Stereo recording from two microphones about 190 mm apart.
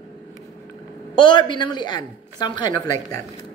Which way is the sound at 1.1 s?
25° left (ahead or behind).